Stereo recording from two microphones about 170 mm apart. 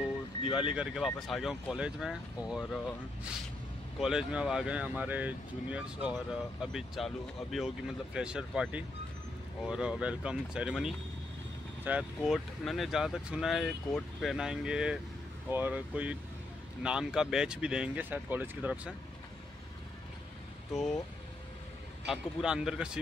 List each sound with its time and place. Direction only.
0.5 s speech: 5° right (ahead or behind)
4.0 s speech: 5° right (ahead or behind)
20.7 s speech: centre (ahead or behind)
22.0 s speech: 5° right (ahead or behind)